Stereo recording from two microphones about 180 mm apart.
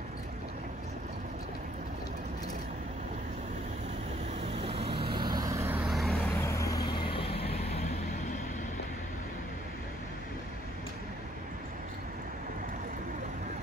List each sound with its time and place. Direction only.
4.6 s vehicle: 30° right (ahead or behind); by 6.3 s centre (ahead or behind)
6.4 s vehicle: 15° left (ahead or behind)